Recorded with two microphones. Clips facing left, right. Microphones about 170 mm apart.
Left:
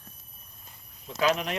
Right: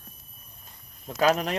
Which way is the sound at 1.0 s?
40° right (ahead or behind).